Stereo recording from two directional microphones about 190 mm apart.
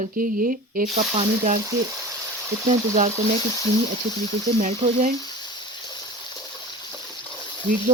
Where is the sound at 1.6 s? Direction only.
15° right (ahead or behind).